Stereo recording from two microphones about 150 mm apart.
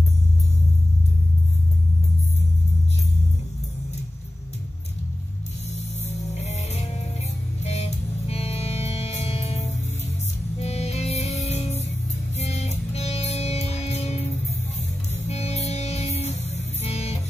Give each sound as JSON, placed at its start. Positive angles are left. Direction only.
{"t": 6.3, "sound": "music", "side_deg": 45}